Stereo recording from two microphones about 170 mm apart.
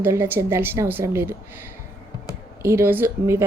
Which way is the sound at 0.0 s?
15° right (ahead or behind).